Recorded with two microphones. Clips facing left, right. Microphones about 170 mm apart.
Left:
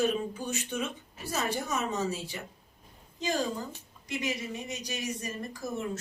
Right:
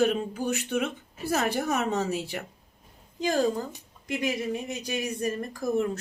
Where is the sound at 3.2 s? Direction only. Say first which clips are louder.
Right 6 dB; 50° right (ahead or behind).